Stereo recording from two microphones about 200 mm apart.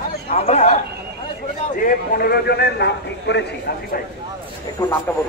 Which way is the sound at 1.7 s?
45° left (ahead or behind).